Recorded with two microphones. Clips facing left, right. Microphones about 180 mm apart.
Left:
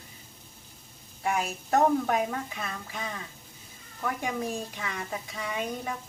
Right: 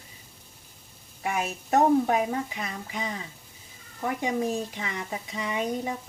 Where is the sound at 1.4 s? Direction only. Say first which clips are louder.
Right 2 dB; 20° right (ahead or behind).